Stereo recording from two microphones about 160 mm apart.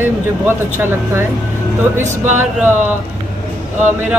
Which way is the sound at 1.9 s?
50° right (ahead or behind).